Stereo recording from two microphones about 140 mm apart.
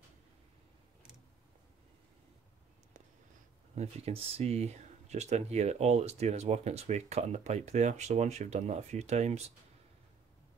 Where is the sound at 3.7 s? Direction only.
50° right (ahead or behind).